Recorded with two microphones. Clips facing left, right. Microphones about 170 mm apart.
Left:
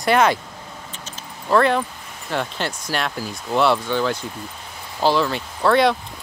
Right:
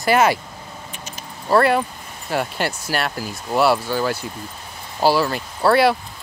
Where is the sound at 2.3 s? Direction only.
10° right (ahead or behind).